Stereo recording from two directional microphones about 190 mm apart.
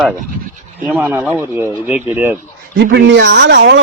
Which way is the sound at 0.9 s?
10° right (ahead or behind).